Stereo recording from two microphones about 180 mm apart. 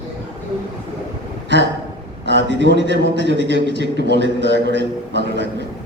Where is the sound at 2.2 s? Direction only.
75° right (ahead or behind).